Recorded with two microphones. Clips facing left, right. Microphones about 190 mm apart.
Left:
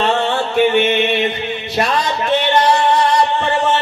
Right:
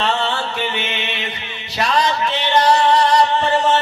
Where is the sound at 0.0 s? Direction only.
50° left (ahead or behind).